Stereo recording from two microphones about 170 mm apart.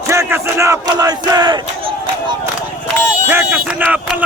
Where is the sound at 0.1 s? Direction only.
15° right (ahead or behind).